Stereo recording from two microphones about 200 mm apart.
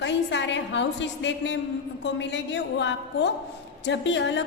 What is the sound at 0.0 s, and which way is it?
A woman's voice, 60° left (ahead or behind).